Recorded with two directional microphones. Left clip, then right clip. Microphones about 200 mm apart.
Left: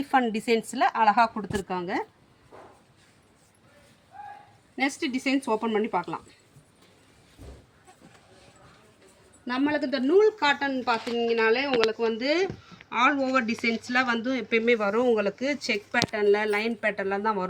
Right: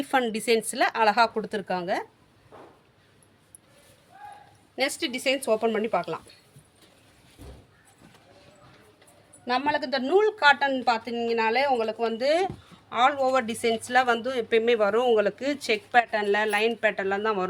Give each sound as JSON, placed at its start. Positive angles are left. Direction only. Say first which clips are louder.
{"t": 0.0, "sound": "speech", "louder": "left 1 dB", "side_deg": -25}
{"t": 4.8, "sound": "speech", "louder": "right 1 dB", "side_deg": -35}
{"t": 9.5, "sound": "a woman's voice", "louder": "right 2 dB", "side_deg": -25}